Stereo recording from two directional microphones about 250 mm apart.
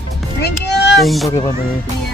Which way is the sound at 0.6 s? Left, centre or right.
Left.